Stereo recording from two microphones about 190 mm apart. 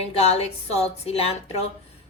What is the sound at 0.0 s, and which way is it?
A woman's voice, 30° left (ahead or behind).